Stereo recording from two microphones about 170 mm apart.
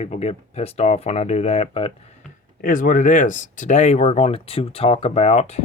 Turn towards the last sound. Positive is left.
turn(degrees=40)  # may be behind; listen again after turning